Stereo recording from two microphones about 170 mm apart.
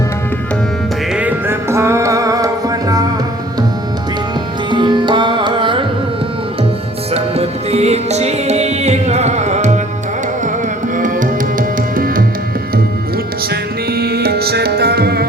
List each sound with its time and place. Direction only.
1.1 s music: 10° right (ahead or behind)
4.7 s music: 25° right (ahead or behind)
7.1 s music: 40° right (ahead or behind)
10.9 s tabla: 50° right (ahead or behind)
11.9 s music: 55° right (ahead or behind)
13.5 s music: 70° right (ahead or behind)